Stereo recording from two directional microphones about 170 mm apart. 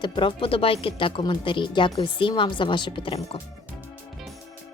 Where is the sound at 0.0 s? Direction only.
30° left (ahead or behind).